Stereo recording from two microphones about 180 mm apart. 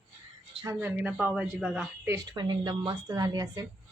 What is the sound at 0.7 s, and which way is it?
Speech, 10° right (ahead or behind).